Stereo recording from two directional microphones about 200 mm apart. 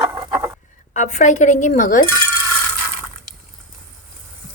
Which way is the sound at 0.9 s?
40° left (ahead or behind).